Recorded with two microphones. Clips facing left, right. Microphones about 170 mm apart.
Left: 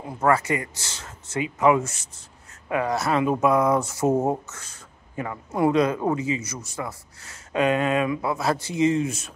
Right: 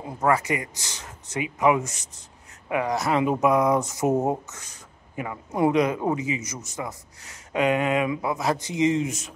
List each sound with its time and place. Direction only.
0.2 s speech: 15° right (ahead or behind)